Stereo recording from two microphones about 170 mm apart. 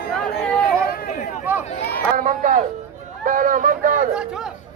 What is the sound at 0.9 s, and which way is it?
Chatter, 50° left (ahead or behind).